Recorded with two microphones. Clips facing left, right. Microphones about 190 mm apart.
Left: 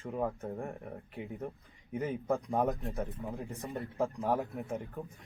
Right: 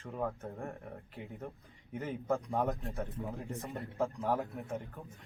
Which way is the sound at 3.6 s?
15° left (ahead or behind).